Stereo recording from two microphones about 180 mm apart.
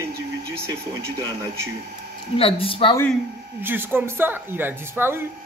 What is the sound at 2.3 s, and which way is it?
Speech, 30° left (ahead or behind).